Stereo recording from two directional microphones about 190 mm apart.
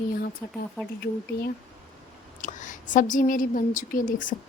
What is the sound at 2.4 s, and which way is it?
A woman's voice, 40° left (ahead or behind).